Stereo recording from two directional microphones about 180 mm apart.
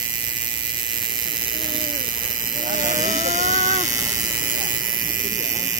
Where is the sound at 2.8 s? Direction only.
45° right (ahead or behind).